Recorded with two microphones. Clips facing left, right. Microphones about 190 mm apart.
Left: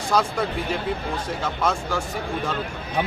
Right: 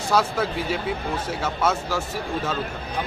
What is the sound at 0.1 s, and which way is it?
Speech, centre (ahead or behind).